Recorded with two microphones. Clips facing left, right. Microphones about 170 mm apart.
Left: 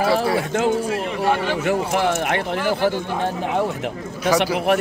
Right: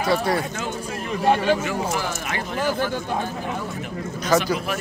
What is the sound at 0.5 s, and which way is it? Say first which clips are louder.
Speech: left 9 dB; 60° left (ahead or behind).